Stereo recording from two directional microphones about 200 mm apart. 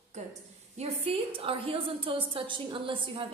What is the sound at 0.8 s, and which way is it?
A woman's voice, 25° right (ahead or behind).